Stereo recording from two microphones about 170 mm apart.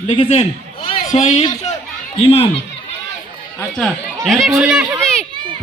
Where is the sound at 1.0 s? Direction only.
45° left (ahead or behind).